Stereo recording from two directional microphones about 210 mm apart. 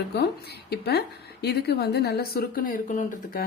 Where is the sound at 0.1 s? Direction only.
50° left (ahead or behind).